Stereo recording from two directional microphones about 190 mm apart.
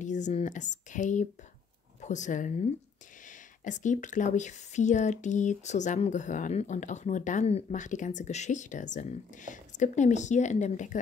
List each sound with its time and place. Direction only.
0.0 s speech: 40° left (ahead or behind)